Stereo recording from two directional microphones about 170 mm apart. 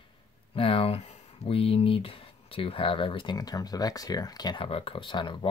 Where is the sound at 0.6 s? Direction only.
35° left (ahead or behind).